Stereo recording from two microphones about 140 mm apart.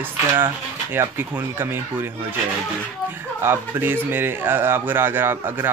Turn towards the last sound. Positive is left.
turn(degrees=-15)  # may be behind; listen again after turning